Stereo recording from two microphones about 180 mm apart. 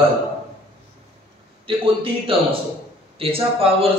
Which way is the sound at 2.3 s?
30° right (ahead or behind).